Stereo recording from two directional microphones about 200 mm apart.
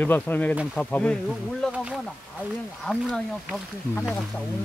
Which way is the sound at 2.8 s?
Centre (ahead or behind).